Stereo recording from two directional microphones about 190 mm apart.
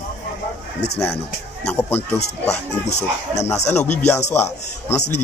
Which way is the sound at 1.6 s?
10° left (ahead or behind).